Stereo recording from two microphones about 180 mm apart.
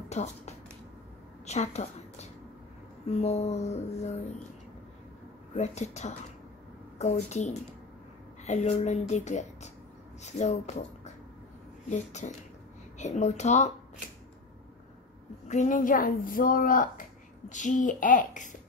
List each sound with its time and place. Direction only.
0.1 s a woman's voice: 35° left (ahead or behind)
5.5 s a woman's voice: 40° left (ahead or behind)
11.9 s a woman's voice: 40° left (ahead or behind)
15.4 s speech: 40° left (ahead or behind)